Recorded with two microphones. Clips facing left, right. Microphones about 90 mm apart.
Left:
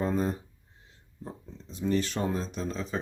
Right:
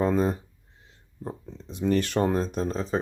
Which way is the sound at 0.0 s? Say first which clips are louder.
Right 5 dB; 90° right.